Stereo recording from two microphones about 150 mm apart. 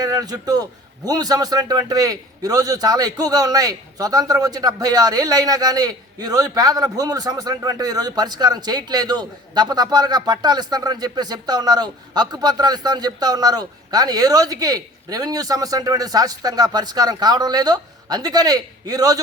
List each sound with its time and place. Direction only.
0.0 s a man's voice: 25° right (ahead or behind)